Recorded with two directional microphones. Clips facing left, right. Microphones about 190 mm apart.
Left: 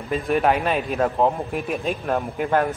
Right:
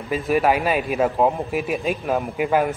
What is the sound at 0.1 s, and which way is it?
A man's voice, 5° right (ahead or behind).